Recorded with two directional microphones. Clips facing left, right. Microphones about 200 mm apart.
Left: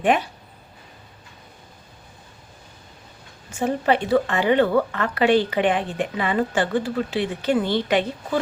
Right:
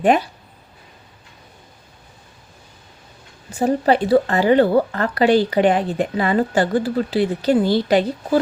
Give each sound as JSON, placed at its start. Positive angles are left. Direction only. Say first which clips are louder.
{"t": 0.0, "sound": "speech", "louder": "right 4 dB", "side_deg": -40}
{"t": 3.5, "sound": "speech", "louder": "right 4 dB", "side_deg": -35}